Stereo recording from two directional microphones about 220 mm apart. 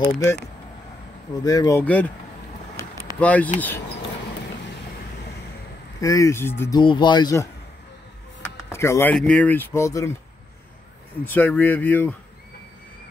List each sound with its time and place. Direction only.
1.4 s speech: 15° left (ahead or behind)
5.9 s speech: 15° left (ahead or behind)
8.7 s speech: 10° left (ahead or behind)
11.2 s speech: 10° left (ahead or behind)